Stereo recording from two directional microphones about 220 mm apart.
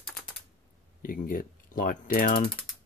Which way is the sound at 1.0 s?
40° left (ahead or behind).